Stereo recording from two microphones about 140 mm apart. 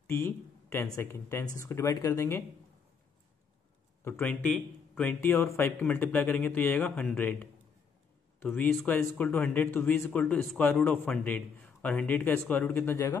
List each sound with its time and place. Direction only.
0.0 s a sound: 15° left (ahead or behind)
0.9 s speech: 15° left (ahead or behind)
4.0 s speech: 10° left (ahead or behind)